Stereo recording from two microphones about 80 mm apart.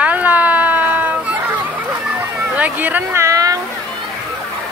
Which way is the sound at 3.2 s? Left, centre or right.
Right.